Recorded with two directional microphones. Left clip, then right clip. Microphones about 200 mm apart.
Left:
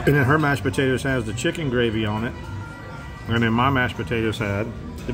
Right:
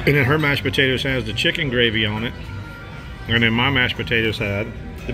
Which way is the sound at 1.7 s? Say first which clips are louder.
Right 4 dB; 35° left (ahead or behind).